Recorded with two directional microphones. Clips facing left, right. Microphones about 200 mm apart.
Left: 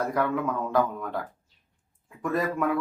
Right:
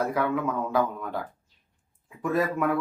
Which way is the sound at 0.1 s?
5° right (ahead or behind).